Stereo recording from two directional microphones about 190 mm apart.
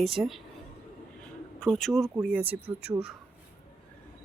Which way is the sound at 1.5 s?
5° left (ahead or behind).